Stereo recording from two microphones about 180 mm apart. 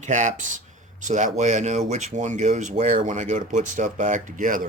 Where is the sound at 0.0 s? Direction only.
40° right (ahead or behind).